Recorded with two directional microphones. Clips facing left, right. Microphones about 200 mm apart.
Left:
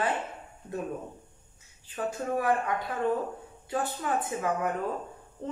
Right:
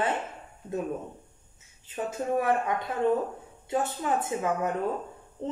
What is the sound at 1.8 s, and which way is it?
Speech, 20° right (ahead or behind).